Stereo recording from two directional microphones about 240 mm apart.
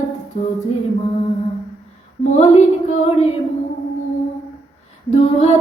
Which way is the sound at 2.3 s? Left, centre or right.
Left.